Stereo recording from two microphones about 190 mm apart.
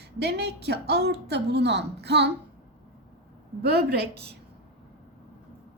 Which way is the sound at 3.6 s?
60° right (ahead or behind).